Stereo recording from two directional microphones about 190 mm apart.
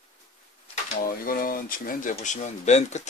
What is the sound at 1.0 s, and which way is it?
Speech, 50° left (ahead or behind).